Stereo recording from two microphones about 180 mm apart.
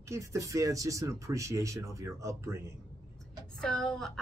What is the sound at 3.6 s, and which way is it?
Speech, centre (ahead or behind).